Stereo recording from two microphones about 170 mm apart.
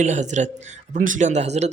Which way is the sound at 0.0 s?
45° right (ahead or behind).